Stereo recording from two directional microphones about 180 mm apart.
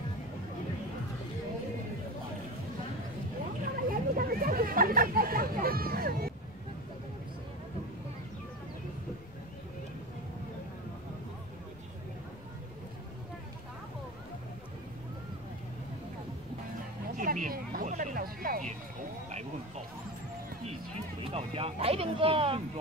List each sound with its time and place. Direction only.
3.9 s chatter: 55° right (ahead or behind)
17.2 s a sound: 50° right (ahead or behind)
19.2 s music: 40° right (ahead or behind)
21.2 s vehicle: 35° right (ahead or behind)